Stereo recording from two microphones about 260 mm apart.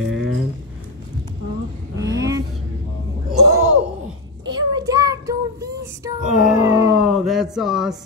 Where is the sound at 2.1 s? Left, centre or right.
Centre.